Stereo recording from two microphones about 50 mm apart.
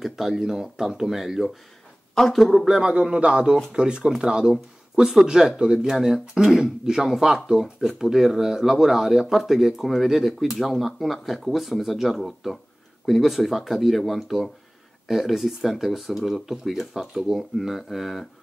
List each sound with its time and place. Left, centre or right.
0.0 s speech: centre
2.8 s a man's voice: right; by 18.2 s centre